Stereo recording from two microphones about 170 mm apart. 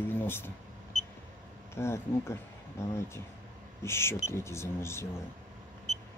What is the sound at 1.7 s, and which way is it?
Speech, 15° left (ahead or behind).